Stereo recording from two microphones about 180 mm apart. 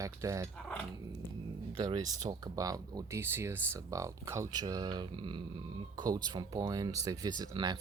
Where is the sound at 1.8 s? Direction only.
20° right (ahead or behind).